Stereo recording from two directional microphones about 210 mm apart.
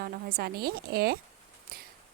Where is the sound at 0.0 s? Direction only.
45° right (ahead or behind).